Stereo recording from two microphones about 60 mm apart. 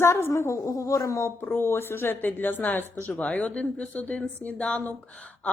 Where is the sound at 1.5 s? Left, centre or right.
Left.